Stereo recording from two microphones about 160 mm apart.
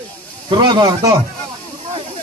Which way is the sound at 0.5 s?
25° right (ahead or behind).